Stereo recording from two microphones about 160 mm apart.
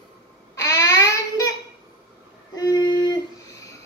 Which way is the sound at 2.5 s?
25° left (ahead or behind).